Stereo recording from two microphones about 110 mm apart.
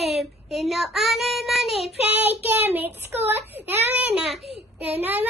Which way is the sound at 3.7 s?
15° right (ahead or behind).